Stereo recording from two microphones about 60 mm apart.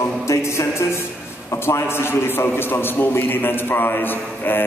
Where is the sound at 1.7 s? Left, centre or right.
Left.